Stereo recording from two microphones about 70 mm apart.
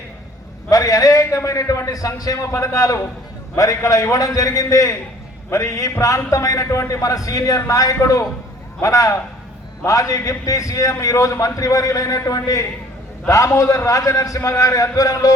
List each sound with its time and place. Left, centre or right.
0.7 s a man's voice: left